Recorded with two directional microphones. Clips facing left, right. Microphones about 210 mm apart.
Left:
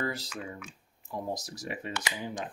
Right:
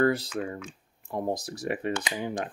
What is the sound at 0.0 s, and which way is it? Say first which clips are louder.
Speech: right 10 dB; 55° right (ahead or behind).